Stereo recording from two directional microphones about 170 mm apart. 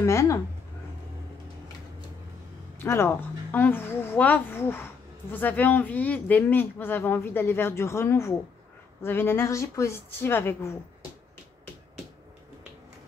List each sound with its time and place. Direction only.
0.0 s speech: 15° left (ahead or behind)
2.8 s speech: 15° left (ahead or behind)